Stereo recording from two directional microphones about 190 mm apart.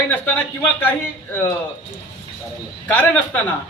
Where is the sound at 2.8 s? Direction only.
10° left (ahead or behind).